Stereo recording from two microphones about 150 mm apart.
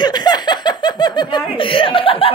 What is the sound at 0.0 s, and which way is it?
Snicker, 30° left (ahead or behind).